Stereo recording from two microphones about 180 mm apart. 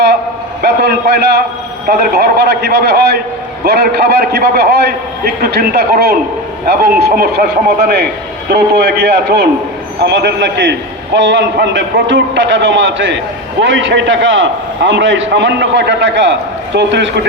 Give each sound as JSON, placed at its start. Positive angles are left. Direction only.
{"t": 0.6, "sound": "a man's voice", "side_deg": -65}
{"t": 16.7, "sound": "a man's voice", "side_deg": -75}